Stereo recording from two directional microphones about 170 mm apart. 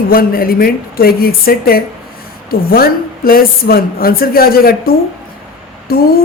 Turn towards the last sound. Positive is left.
turn(degrees=60)  # may be behind; listen again after turning